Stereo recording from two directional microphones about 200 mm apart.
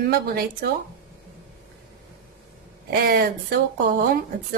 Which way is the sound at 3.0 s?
50° right (ahead or behind).